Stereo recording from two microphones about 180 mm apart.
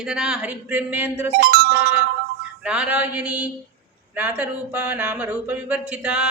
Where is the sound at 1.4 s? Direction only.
60° right (ahead or behind).